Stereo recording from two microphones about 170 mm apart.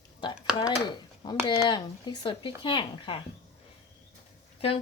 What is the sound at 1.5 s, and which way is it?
Speech, 25° left (ahead or behind).